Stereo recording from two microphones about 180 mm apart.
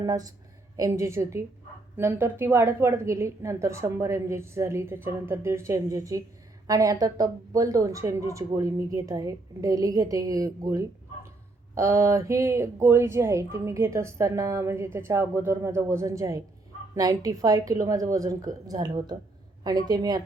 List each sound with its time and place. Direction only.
0.0 s speech: 20° right (ahead or behind)